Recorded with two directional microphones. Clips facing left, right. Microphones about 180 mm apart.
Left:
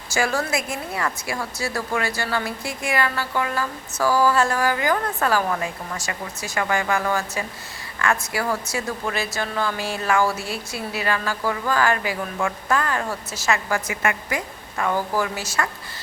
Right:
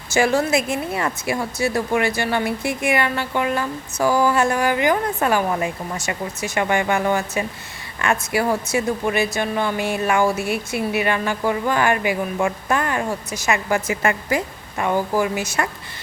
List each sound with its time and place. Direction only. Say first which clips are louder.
0.1 s speech: right 5 dB; 20° right (ahead or behind)
14.8 s a woman's voice: right 3 dB; 15° right (ahead or behind)